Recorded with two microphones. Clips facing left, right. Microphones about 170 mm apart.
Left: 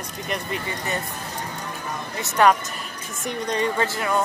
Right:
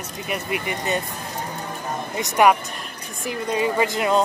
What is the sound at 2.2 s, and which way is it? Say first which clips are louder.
Speech: right 1 dB; 10° right (ahead or behind).